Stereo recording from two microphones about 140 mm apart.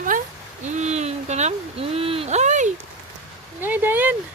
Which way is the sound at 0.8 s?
50° right (ahead or behind).